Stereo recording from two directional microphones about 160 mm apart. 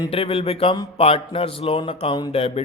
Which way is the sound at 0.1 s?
35° left (ahead or behind).